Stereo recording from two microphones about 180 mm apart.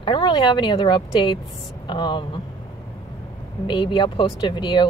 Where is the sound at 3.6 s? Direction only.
25° left (ahead or behind).